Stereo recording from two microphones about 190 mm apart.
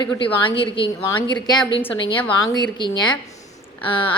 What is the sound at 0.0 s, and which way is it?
A woman's voice, 25° left (ahead or behind).